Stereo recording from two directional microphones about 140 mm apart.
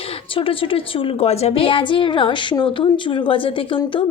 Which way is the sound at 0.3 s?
40° left (ahead or behind).